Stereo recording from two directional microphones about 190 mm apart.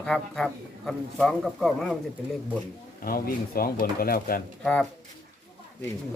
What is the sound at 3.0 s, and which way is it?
Speech, 50° left (ahead or behind).